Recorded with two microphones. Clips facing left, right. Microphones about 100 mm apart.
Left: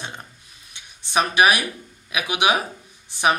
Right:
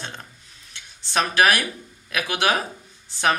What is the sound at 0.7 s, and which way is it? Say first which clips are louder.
Speech: left 2 dB; 15° left (ahead or behind).